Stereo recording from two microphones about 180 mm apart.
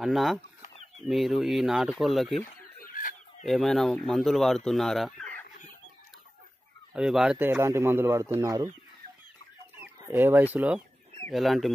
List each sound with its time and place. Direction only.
0.0 s speech: centre (ahead or behind)
2.8 s a sound: 50° left (ahead or behind)
3.4 s speech: centre (ahead or behind)
6.9 s speech: 5° right (ahead or behind); by 8.6 s 20° right (ahead or behind)
9.8 s speech: 10° right (ahead or behind)